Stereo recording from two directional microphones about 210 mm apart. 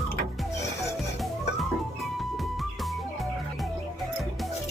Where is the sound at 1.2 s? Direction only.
Centre (ahead or behind).